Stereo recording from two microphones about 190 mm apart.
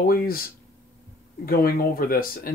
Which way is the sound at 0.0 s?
50° left (ahead or behind).